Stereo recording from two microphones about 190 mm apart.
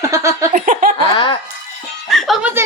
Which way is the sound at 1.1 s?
25° left (ahead or behind).